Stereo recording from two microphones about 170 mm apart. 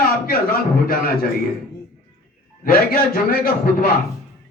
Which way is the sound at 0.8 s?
60° left (ahead or behind).